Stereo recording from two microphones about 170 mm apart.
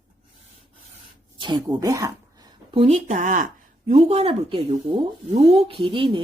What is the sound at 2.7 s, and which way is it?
Speech, 40° right (ahead or behind).